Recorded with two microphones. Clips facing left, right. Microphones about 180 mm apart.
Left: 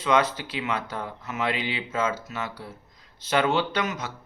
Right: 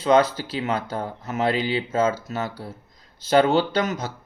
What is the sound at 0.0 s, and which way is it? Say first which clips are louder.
Speech: right 5 dB; 35° right (ahead or behind).